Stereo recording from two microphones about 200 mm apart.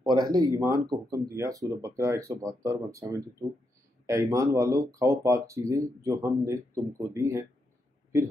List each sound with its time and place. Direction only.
0.0 s speech: 20° right (ahead or behind)